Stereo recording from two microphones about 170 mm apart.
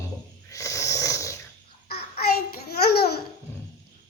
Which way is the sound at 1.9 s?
65° left (ahead or behind).